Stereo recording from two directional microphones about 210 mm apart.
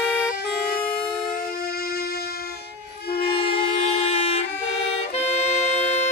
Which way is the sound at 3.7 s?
30° left (ahead or behind).